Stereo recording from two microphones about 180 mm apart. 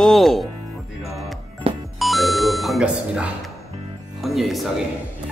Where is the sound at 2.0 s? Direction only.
Centre (ahead or behind).